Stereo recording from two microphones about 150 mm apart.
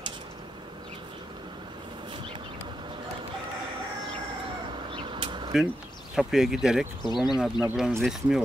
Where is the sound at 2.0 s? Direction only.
35° right (ahead or behind).